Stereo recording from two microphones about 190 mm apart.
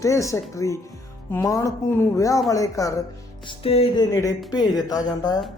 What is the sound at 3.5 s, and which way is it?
Speech, 30° left (ahead or behind).